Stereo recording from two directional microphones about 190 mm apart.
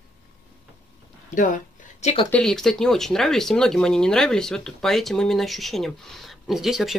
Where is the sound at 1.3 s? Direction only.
45° left (ahead or behind).